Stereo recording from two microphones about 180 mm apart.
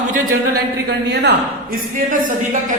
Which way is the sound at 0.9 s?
70° right (ahead or behind).